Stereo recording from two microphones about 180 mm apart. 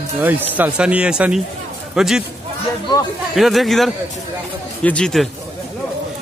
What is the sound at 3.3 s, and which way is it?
Speech, centre (ahead or behind).